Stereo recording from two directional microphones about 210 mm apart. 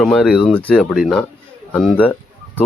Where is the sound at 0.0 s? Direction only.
Centre (ahead or behind).